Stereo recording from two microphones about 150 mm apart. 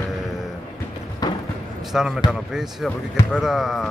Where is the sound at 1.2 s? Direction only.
25° left (ahead or behind).